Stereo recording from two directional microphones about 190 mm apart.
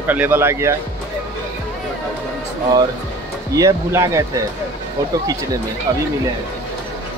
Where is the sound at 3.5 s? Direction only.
15° right (ahead or behind).